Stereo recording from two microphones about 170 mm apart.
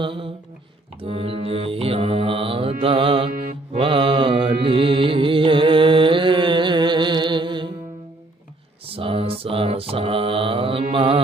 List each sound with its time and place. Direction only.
0.0 s mantra: 30° right (ahead or behind)
4.6 s music: 30° right (ahead or behind)
8.9 s mantra: 30° right (ahead or behind)